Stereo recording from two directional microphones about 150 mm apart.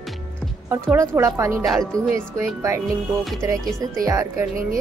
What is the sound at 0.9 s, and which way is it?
Speech, 20° right (ahead or behind).